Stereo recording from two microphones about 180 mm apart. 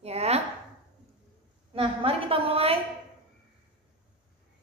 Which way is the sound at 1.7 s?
30° right (ahead or behind).